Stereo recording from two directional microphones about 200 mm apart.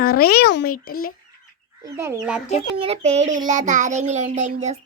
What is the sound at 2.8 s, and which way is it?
A child's voice, 30° right (ahead or behind).